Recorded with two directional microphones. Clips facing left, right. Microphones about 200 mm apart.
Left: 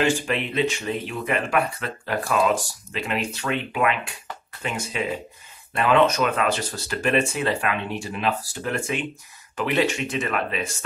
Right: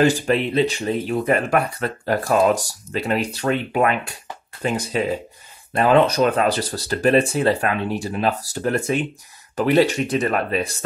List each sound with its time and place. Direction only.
0.0 s speech: 40° right (ahead or behind)